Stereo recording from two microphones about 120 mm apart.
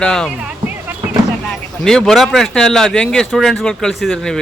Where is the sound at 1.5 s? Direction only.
5° left (ahead or behind).